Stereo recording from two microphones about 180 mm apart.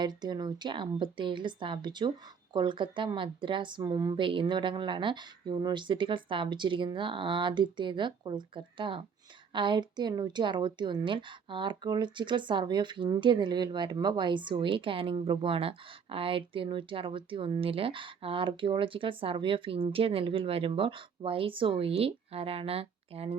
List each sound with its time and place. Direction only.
0.0 s a woman's voice: 25° right (ahead or behind)